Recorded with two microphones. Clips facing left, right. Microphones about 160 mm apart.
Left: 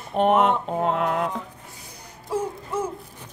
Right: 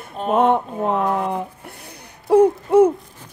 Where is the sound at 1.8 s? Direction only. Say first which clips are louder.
Right 3 dB; 65° right (ahead or behind).